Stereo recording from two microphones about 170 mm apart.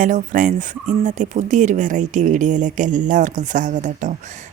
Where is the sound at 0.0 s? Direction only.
50° right (ahead or behind).